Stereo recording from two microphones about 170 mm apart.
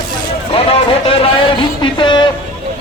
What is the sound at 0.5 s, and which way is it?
Speech, 35° left (ahead or behind).